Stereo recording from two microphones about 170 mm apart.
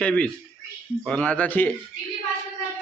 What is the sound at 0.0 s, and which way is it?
A man's voice, 5° left (ahead or behind).